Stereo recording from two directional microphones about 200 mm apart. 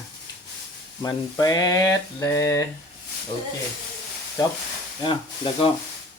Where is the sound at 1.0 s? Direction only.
20° left (ahead or behind).